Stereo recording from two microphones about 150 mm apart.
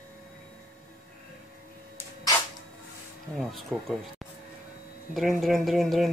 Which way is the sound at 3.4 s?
Centre (ahead or behind).